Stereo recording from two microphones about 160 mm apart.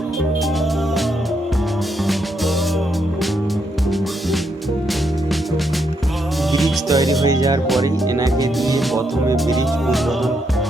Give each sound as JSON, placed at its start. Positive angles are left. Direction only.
{"t": 6.5, "sound": "music", "side_deg": 0}
{"t": 7.3, "sound": "speech", "side_deg": -20}
{"t": 9.5, "sound": "music", "side_deg": 0}